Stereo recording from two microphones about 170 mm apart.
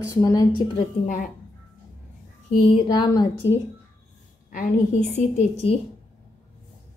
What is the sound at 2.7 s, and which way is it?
Speech, 25° left (ahead or behind).